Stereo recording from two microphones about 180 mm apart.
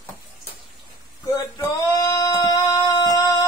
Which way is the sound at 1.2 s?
20° left (ahead or behind).